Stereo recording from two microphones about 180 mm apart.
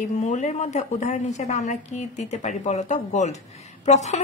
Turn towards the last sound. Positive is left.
turn(degrees=40)  # may be behind; listen again after turning